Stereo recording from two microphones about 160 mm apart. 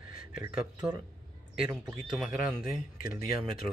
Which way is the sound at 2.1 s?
Centre (ahead or behind).